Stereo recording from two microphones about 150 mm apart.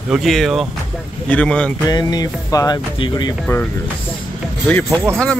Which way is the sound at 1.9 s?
25° left (ahead or behind).